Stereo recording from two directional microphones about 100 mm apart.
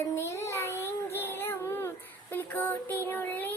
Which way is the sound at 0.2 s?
25° left (ahead or behind).